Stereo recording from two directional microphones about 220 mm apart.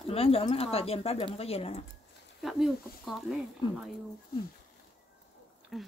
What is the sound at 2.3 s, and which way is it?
Speech, centre (ahead or behind).